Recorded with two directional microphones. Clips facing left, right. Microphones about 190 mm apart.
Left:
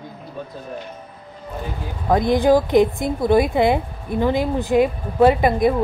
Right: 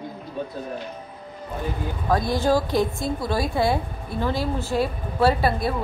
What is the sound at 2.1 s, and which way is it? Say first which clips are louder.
A woman's voice: left 6 dB; 20° left (ahead or behind).